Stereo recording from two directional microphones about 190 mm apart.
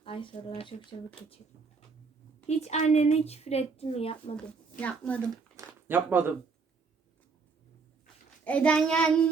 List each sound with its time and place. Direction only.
0.0 s speech: 25° left (ahead or behind)
2.5 s a woman's voice: 35° left (ahead or behind)
4.8 s speech: 10° left (ahead or behind)
5.5 s a sound: 10° right (ahead or behind)
8.4 s a child's voice: 5° left (ahead or behind)